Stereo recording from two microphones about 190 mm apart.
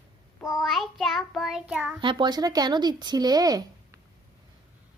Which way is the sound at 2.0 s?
25° right (ahead or behind).